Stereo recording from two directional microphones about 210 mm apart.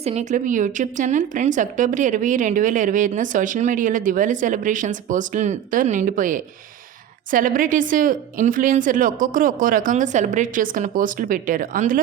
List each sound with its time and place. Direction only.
0.0 s speech: 30° right (ahead or behind)